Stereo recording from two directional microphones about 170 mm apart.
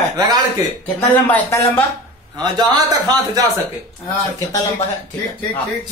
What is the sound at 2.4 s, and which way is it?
A man's voice, 25° right (ahead or behind).